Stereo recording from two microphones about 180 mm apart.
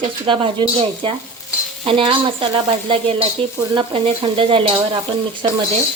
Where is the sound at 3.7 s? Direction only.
30° right (ahead or behind).